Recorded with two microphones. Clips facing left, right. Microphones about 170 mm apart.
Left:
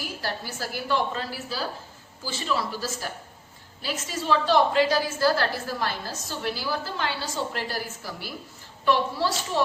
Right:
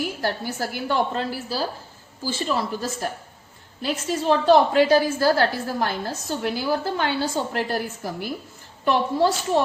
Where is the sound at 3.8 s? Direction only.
50° right (ahead or behind).